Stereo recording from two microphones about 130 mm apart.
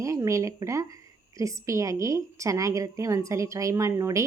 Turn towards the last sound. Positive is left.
turn(degrees=-25)  # may be behind; listen again after turning